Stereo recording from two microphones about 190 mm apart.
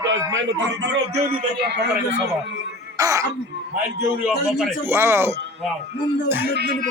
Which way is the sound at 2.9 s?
15° right (ahead or behind).